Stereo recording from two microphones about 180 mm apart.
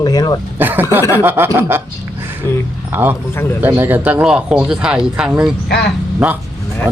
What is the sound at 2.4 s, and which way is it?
Speech, 15° left (ahead or behind).